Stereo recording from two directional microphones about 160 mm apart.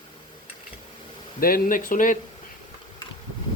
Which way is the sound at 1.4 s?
60° left (ahead or behind).